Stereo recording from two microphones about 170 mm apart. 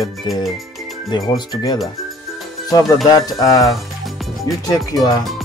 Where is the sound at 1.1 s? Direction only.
25° left (ahead or behind).